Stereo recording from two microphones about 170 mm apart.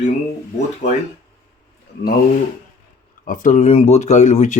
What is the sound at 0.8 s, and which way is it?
Speech, 45° left (ahead or behind).